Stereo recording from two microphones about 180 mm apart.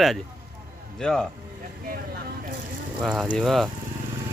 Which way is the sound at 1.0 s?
5° left (ahead or behind).